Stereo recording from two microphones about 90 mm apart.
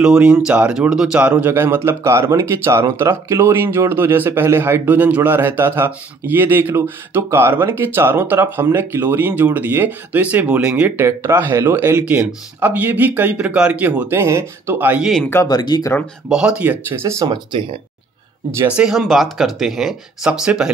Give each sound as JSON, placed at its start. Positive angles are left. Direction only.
{"t": 0.0, "sound": "speech", "side_deg": -10}
{"t": 4.8, "sound": "speech", "side_deg": -15}
{"t": 11.0, "sound": "speech", "side_deg": -25}
{"t": 15.4, "sound": "speech", "side_deg": 50}
{"t": 16.3, "sound": "speech", "side_deg": -10}
{"t": 17.0, "sound": "speech", "side_deg": -35}
{"t": 17.3, "sound": "speech", "side_deg": -65}
{"t": 18.7, "sound": "speech", "side_deg": -10}
{"t": 18.9, "sound": "speech", "side_deg": 0}